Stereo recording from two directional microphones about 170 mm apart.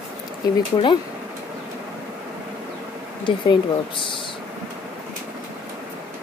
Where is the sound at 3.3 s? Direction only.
30° left (ahead or behind).